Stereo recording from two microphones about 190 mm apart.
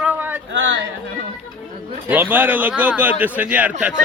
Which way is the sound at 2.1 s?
10° right (ahead or behind).